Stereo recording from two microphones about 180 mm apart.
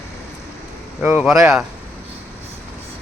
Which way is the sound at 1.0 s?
10° right (ahead or behind).